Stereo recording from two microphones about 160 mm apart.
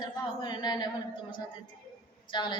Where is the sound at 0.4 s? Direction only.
25° left (ahead or behind).